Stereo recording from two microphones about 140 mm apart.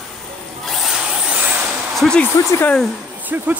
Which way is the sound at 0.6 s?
Centre (ahead or behind).